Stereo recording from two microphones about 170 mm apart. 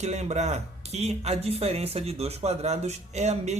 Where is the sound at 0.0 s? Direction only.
40° right (ahead or behind).